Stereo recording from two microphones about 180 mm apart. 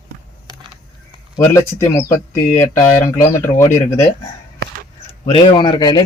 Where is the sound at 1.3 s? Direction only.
15° left (ahead or behind).